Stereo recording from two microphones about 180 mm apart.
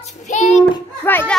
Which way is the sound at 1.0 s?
10° left (ahead or behind).